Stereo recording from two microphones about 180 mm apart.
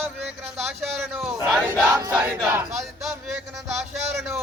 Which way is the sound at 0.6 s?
Centre (ahead or behind).